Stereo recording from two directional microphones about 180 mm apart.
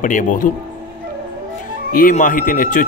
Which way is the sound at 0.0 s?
45° left (ahead or behind).